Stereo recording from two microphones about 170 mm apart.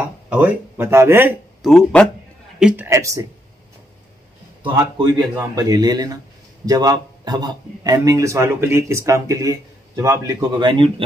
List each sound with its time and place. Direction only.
0.3 s speech: 10° right (ahead or behind)
1.6 s speech: centre (ahead or behind)
2.6 s speech: 10° right (ahead or behind)
4.7 s speech: 25° right (ahead or behind)